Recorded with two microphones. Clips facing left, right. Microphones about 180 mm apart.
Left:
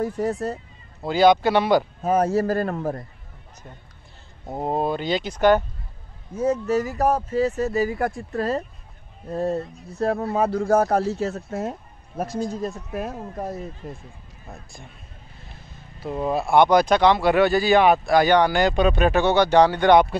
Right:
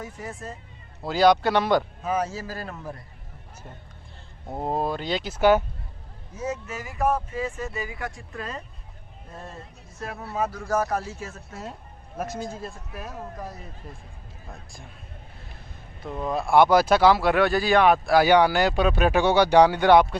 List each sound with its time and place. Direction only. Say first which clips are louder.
0.0 s speech: left 12 dB; 65° left (ahead or behind)
1.0 s speech: left 3 dB; centre (ahead or behind)
2.0 s a man's voice: left 8 dB; 55° left (ahead or behind)
4.6 s speech: left 3 dB; centre (ahead or behind)
6.3 s speech: left 10 dB; 30° left (ahead or behind)
12.4 s a man's voice: left 7 dB; 40° left (ahead or behind)
14.5 s speech: left 3 dB; centre (ahead or behind)